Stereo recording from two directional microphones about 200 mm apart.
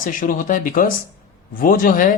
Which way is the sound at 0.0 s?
40° left (ahead or behind).